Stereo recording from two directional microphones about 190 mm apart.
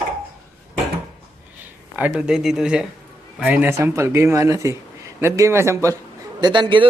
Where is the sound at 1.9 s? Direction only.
5° right (ahead or behind); by 6.9 s 25° right (ahead or behind).